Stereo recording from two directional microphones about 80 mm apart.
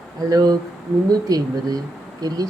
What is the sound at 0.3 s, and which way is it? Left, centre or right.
A woman's voice, right.